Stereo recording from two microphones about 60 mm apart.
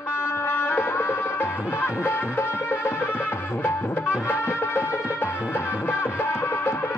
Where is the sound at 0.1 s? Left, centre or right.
Left.